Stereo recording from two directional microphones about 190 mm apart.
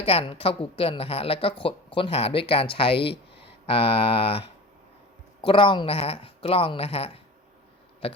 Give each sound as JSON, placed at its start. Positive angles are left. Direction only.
{"t": 0.0, "sound": "a woman's voice", "side_deg": 30}